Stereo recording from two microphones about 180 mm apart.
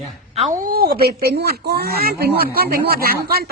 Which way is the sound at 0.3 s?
45° right (ahead or behind).